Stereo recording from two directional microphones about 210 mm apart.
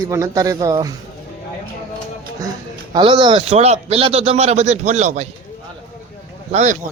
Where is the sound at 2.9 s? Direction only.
20° right (ahead or behind).